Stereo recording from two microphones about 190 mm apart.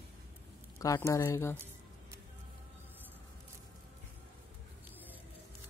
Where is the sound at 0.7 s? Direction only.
15° left (ahead or behind).